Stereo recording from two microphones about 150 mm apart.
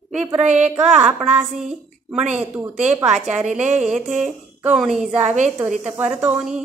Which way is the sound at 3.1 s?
50° right (ahead or behind).